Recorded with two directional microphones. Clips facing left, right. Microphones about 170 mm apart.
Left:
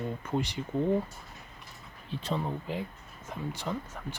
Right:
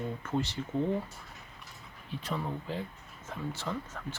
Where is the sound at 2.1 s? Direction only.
25° left (ahead or behind).